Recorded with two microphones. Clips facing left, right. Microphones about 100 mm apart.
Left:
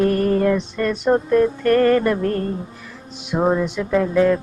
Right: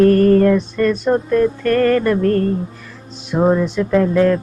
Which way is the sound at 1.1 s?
5° left (ahead or behind).